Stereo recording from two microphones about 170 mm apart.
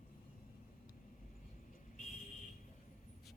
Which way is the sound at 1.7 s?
50° left (ahead or behind).